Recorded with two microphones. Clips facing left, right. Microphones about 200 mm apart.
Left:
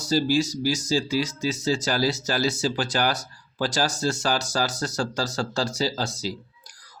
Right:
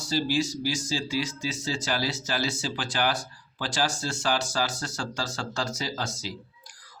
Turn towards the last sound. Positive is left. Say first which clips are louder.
# left 6 dB
turn(degrees=35)  # may be behind; listen again after turning